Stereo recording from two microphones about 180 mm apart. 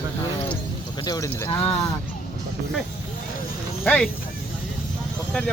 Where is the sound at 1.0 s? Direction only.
20° left (ahead or behind).